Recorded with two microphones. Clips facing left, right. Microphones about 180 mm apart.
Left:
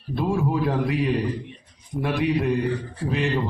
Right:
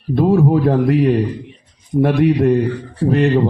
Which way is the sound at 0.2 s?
65° right (ahead or behind).